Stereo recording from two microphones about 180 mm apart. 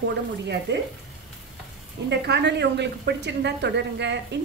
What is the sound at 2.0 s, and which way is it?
A woman's voice, 70° right (ahead or behind).